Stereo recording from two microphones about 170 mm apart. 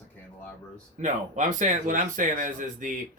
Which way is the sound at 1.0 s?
45° right (ahead or behind).